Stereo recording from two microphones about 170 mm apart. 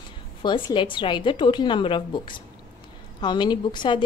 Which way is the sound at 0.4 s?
25° left (ahead or behind).